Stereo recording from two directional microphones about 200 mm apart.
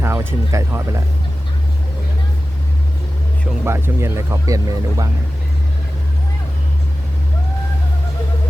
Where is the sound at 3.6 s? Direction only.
15° right (ahead or behind).